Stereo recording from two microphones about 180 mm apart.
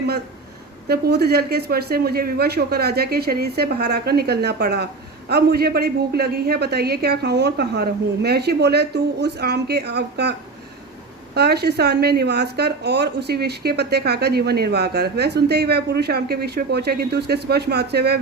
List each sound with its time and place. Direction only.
0.9 s a woman's voice: 60° right (ahead or behind)
11.3 s a woman's voice: 65° right (ahead or behind)